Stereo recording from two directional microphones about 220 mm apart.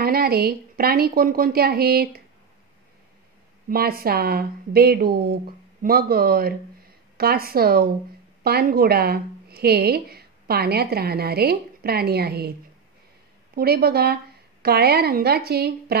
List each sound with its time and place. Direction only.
0.0 s a woman's voice: 45° right (ahead or behind)
3.6 s a woman's voice: 45° right (ahead or behind)
13.6 s a woman's voice: 45° right (ahead or behind)